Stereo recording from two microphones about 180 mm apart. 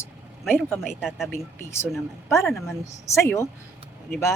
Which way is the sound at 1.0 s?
Centre (ahead or behind).